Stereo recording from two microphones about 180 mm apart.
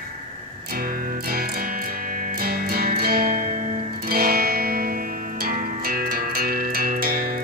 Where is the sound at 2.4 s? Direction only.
55° right (ahead or behind).